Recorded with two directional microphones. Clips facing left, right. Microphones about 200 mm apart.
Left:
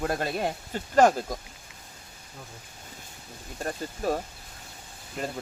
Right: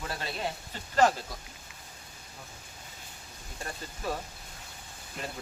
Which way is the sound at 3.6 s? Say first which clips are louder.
Left 7 dB; 45° left (ahead or behind).